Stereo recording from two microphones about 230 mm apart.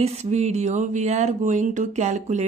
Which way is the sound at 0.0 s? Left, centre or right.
Right.